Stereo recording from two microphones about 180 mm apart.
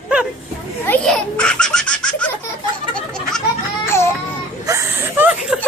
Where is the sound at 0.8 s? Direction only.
5° left (ahead or behind).